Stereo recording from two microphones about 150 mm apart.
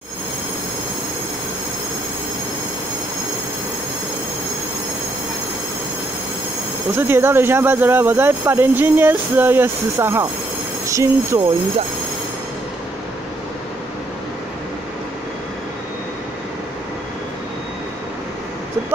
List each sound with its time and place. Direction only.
7.0 s speech: 15° right (ahead or behind)